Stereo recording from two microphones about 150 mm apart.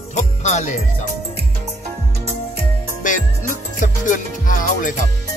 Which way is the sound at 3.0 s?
60° left (ahead or behind).